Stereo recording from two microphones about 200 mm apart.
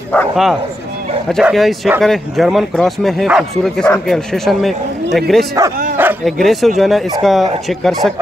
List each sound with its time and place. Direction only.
0.1 s speech: centre (ahead or behind)
5.6 s speech: 15° right (ahead or behind)
6.2 s speech: centre (ahead or behind)